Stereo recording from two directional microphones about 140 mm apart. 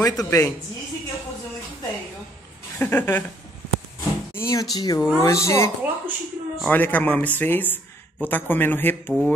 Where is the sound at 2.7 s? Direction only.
15° left (ahead or behind).